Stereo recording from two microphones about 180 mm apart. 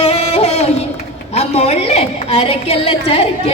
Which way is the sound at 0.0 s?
35° left (ahead or behind).